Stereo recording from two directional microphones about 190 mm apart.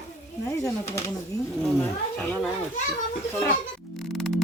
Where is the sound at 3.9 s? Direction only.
Centre (ahead or behind).